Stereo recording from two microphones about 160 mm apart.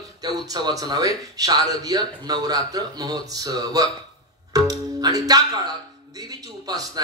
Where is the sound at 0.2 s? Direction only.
25° right (ahead or behind).